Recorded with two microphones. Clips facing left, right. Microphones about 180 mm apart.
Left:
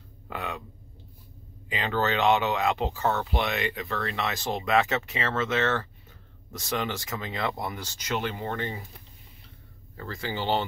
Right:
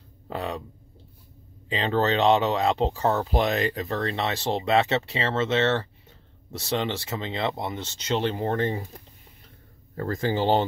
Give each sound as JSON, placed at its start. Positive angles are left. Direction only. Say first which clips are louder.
{"t": 0.3, "sound": "speech", "louder": "right 4 dB", "side_deg": -30}
{"t": 1.7, "sound": "speech", "louder": "right 4 dB", "side_deg": -30}